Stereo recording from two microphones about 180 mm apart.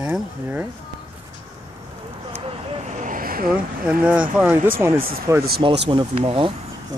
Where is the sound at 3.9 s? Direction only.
5° right (ahead or behind).